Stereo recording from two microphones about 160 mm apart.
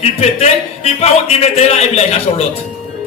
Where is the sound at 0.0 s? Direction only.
40° left (ahead or behind).